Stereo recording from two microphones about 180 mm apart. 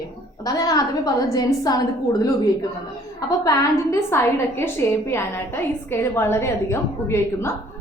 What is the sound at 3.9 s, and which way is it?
A woman's voice, 15° left (ahead or behind).